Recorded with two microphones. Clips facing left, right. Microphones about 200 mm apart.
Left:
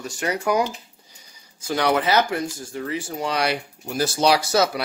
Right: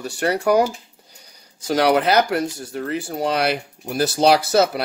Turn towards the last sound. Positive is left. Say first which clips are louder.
# right 3 dB
turn(degrees=-55)  # may be behind; listen again after turning